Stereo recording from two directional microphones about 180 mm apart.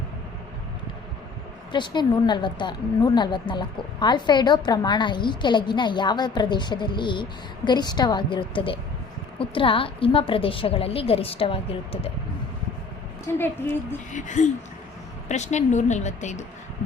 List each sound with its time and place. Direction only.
1.7 s a woman's voice: 25° left (ahead or behind)
13.3 s a woman's voice: 15° left (ahead or behind)
14.1 s a woman's voice: 45° left (ahead or behind)